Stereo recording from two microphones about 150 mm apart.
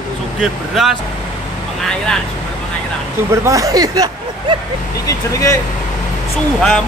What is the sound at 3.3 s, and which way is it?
Speech, 20° right (ahead or behind).